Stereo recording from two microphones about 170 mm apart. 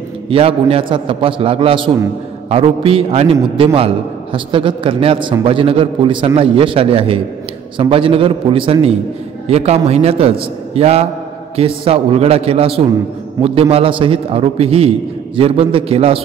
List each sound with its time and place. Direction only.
0.3 s a man's voice: 35° right (ahead or behind)